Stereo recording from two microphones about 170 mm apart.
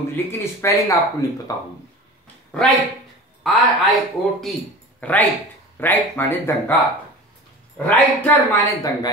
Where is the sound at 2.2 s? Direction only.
5° left (ahead or behind).